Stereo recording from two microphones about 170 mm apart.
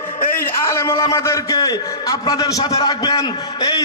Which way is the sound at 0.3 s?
15° left (ahead or behind).